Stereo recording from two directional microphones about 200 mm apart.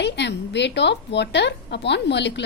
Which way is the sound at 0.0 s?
60° left (ahead or behind).